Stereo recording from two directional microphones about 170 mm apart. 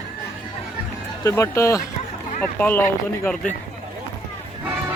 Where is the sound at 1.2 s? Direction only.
15° left (ahead or behind).